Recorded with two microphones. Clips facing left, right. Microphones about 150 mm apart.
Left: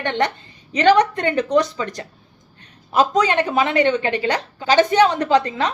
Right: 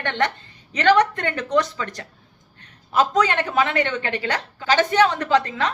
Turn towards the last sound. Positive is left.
turn(degrees=15)  # may be behind; listen again after turning